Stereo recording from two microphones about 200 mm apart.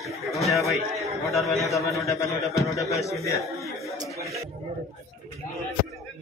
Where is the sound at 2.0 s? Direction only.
15° left (ahead or behind).